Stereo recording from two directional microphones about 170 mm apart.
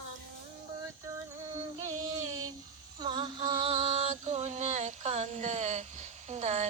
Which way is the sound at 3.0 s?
30° right (ahead or behind).